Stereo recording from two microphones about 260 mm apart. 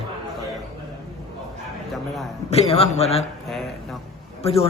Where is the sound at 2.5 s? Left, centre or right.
Left.